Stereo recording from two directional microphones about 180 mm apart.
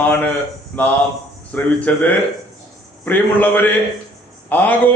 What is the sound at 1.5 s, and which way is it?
A man's voice, 10° left (ahead or behind).